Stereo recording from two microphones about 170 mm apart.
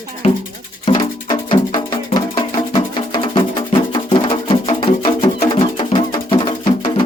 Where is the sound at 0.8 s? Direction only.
25° left (ahead or behind).